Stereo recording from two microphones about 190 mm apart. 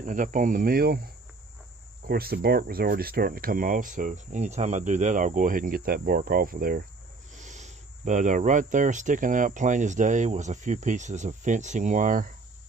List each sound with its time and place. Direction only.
0.0 s speech: 45° right (ahead or behind)
2.0 s speech: 55° right (ahead or behind)
7.3 s speech: 40° right (ahead or behind)